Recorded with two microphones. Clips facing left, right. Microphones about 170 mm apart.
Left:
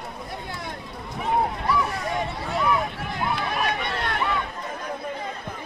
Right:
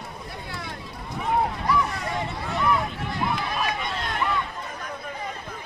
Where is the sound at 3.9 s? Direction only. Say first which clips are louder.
Left 2 dB; 65° left (ahead or behind).